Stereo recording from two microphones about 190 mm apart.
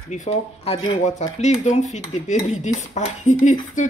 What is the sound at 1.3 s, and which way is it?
Speech, 35° left (ahead or behind).